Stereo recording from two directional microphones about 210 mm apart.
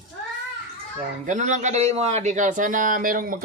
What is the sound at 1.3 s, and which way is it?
A man's voice, 35° right (ahead or behind).